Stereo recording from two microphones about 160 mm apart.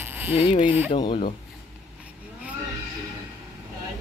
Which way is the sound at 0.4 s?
30° left (ahead or behind).